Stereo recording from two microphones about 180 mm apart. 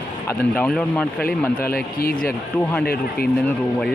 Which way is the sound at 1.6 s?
55° left (ahead or behind).